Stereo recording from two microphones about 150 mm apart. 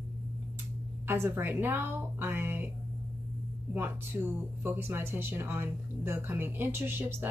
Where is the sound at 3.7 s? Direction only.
15° right (ahead or behind).